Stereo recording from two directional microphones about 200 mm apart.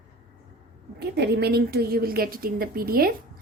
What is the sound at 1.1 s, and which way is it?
A woman's voice, 55° right (ahead or behind).